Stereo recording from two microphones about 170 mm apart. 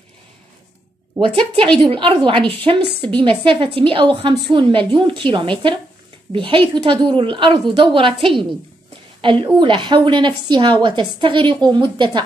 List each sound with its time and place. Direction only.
1.8 s a woman's voice: 35° right (ahead or behind)